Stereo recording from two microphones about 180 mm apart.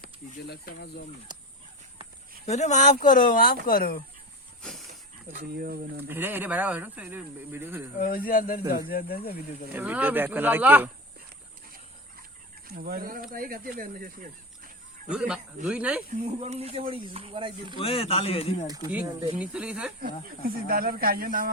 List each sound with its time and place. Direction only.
0.0 s speech: 60° left (ahead or behind)
2.5 s speech: 40° left (ahead or behind)
4.9 s speech: 55° right (ahead or behind)
6.1 s speech: 10° right (ahead or behind)
7.9 s speech: 50° left (ahead or behind)
9.7 s speech: 10° right (ahead or behind)
12.6 s speech: 55° right (ahead or behind)
15.1 s speech: 5° right (ahead or behind)
16.2 s speech: 35° right (ahead or behind)
17.7 s speech: 30° left (ahead or behind)
19.4 s speech: 5° right (ahead or behind)
20.4 s speech: 55° right (ahead or behind)